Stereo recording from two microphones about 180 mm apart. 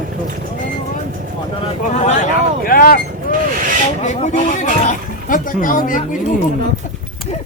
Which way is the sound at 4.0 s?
45° left (ahead or behind).